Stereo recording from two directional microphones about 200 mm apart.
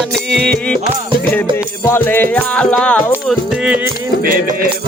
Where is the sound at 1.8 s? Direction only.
10° left (ahead or behind).